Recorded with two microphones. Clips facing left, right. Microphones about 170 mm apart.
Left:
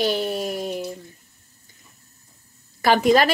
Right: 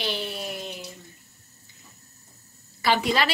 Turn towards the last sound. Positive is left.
turn(degrees=45)  # may be behind; listen again after turning